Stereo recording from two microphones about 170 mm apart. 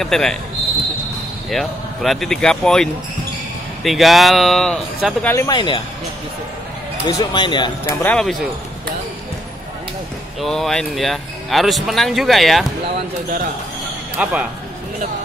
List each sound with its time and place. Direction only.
0.0 s speech: centre (ahead or behind)
1.5 s speech: centre (ahead or behind)
5.3 s speech: 20° left (ahead or behind)
7.1 s speech: 25° left (ahead or behind)
7.9 s speech: 10° left (ahead or behind)
10.4 s speech: centre (ahead or behind)
14.2 s speech: 5° right (ahead or behind)